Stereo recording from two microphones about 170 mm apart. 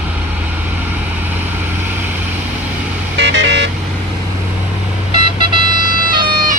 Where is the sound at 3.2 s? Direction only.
90° right.